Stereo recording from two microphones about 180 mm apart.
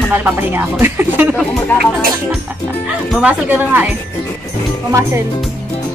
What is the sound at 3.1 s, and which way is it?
Speech, 10° right (ahead or behind).